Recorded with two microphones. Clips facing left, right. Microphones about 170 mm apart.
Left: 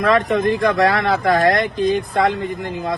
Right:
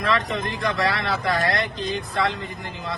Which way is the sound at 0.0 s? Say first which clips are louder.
Left 8 dB; 50° left (ahead or behind).